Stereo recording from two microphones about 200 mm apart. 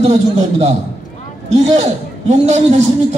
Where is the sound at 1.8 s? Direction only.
35° right (ahead or behind).